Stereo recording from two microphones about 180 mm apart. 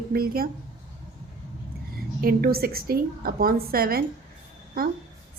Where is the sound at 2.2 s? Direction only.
55° right (ahead or behind).